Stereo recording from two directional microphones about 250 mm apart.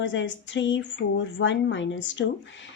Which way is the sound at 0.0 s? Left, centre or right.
Left.